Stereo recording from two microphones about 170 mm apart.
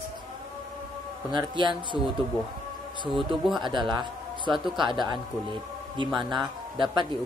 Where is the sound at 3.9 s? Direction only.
25° right (ahead or behind).